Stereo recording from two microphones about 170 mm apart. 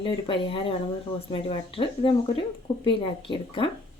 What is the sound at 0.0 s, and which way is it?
Speech, 30° left (ahead or behind).